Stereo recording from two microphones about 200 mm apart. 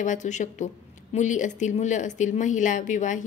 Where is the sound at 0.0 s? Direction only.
40° left (ahead or behind).